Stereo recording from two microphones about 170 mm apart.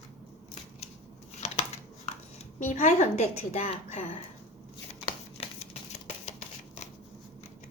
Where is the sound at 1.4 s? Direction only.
40° left (ahead or behind).